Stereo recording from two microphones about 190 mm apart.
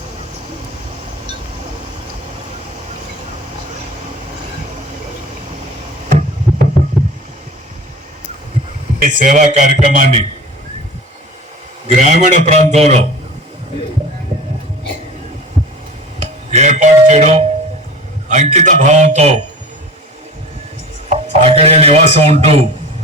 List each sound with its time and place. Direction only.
6.1 s a sound: 45° right (ahead or behind)
9.0 s a man's voice: 45° right (ahead or behind)
11.9 s a man's voice: 40° right (ahead or behind)
16.2 s a sound: 35° right (ahead or behind)
17.1 s a man's voice: 35° right (ahead or behind)
21.1 s speech: 30° right (ahead or behind)